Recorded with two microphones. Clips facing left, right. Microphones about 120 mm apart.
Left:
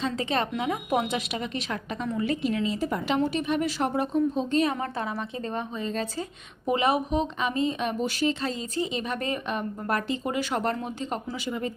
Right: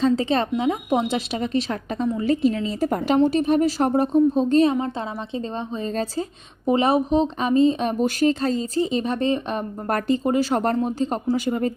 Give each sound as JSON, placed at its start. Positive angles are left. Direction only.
{"t": 0.0, "sound": "speech", "side_deg": -35}
{"t": 4.6, "sound": "a woman's voice", "side_deg": -20}